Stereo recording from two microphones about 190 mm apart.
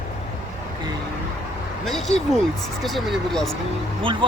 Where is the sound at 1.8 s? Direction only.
Centre (ahead or behind).